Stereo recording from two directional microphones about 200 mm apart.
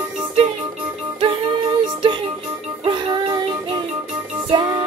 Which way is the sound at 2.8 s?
20° right (ahead or behind).